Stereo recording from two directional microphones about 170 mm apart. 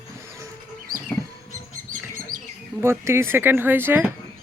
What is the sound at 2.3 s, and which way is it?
Bird, 50° right (ahead or behind).